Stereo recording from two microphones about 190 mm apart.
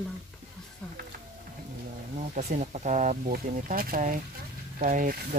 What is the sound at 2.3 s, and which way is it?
Speech, 40° right (ahead or behind).